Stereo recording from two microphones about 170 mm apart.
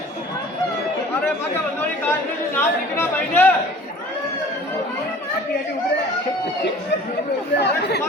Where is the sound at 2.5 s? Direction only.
10° left (ahead or behind).